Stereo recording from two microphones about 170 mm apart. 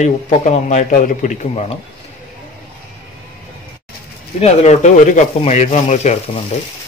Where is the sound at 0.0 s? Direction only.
40° left (ahead or behind).